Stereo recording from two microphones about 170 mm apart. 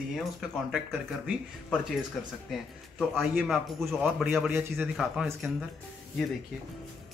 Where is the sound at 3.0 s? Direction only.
Centre (ahead or behind).